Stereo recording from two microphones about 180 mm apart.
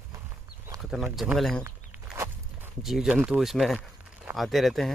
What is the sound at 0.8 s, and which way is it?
Speech, 5° right (ahead or behind).